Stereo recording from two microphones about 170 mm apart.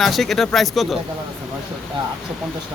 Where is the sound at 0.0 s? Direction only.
Centre (ahead or behind).